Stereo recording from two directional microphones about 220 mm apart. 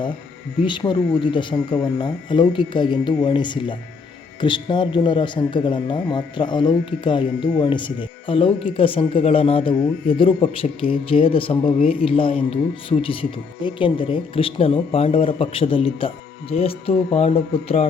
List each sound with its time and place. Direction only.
0.6 s speech: 20° left (ahead or behind)